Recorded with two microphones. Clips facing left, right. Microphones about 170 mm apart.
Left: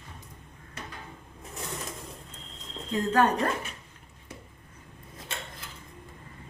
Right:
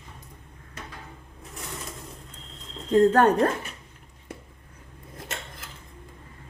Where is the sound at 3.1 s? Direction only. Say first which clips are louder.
Right 5 dB; 55° right (ahead or behind).